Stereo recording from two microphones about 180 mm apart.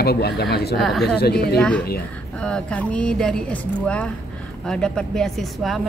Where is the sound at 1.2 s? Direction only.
60° left (ahead or behind).